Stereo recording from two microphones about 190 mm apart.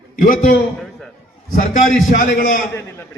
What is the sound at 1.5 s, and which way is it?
A man's voice, 45° left (ahead or behind).